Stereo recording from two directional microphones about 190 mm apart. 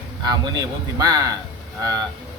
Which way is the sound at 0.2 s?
20° right (ahead or behind).